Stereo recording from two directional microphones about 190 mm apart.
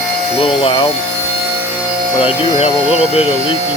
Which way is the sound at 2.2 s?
30° left (ahead or behind).